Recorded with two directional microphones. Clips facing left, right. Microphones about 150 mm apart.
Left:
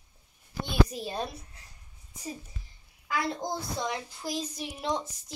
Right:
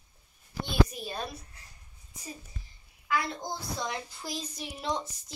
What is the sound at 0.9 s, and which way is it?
Speech, 25° left (ahead or behind).